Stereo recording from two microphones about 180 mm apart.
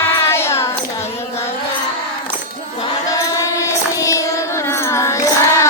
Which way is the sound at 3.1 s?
15° left (ahead or behind).